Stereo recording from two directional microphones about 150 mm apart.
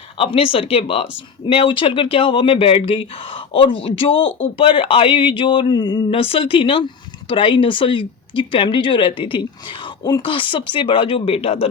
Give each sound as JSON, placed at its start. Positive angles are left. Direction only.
{"t": 0.2, "sound": "speech", "side_deg": 35}